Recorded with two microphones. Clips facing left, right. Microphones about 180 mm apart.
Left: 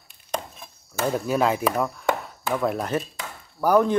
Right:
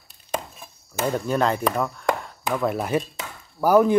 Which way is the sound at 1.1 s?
5° left (ahead or behind).